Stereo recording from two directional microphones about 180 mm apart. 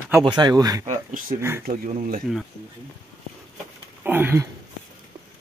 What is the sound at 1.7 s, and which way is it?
Speech, 50° right (ahead or behind).